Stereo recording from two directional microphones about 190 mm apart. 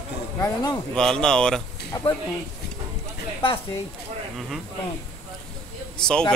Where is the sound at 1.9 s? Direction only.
25° left (ahead or behind).